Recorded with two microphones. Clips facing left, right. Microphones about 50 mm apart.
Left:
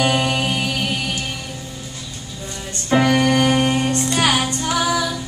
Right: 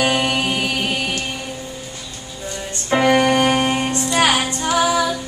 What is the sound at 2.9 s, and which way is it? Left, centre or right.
Music, centre.